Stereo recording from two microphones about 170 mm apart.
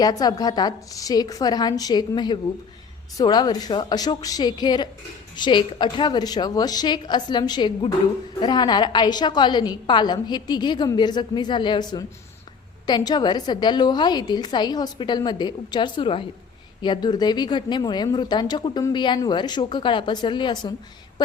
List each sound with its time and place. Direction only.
0.0 s speech: 25° left (ahead or behind)